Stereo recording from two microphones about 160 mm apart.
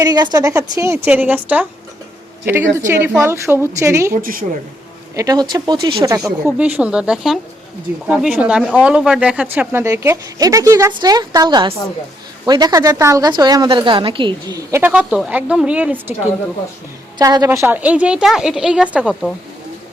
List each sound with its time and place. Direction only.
0.0 s a woman's voice: 25° right (ahead or behind)
4.1 s a woman's voice: 60° right (ahead or behind)
5.1 s speech: 20° right (ahead or behind)
6.1 s a woman's voice: 5° right (ahead or behind); by 14.6 s 30° right (ahead or behind)
14.7 s a woman's voice: 10° right (ahead or behind)
17.2 s a woman's voice: 25° right (ahead or behind); by 19.3 s 5° right (ahead or behind)